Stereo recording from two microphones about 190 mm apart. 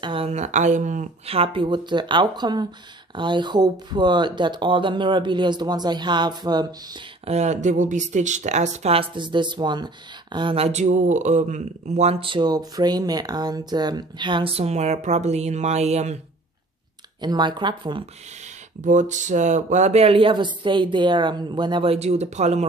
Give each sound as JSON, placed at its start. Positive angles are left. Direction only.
{"t": 0.0, "sound": "speech", "side_deg": -30}
{"t": 7.2, "sound": "speech", "side_deg": -35}
{"t": 17.2, "sound": "speech", "side_deg": -25}
{"t": 18.8, "sound": "speech", "side_deg": -40}